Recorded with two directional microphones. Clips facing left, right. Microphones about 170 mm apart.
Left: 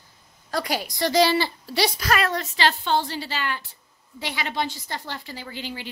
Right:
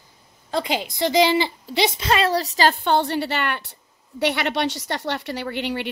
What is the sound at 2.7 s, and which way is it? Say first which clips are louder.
A woman's voice: right 4 dB; 60° right (ahead or behind).